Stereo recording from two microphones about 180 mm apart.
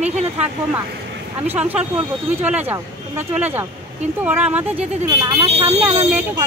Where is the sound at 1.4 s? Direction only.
10° right (ahead or behind).